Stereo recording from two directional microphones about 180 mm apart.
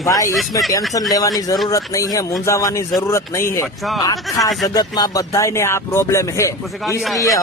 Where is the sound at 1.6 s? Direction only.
20° left (ahead or behind).